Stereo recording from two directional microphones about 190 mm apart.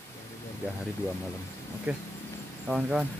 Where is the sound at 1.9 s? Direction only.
5° right (ahead or behind).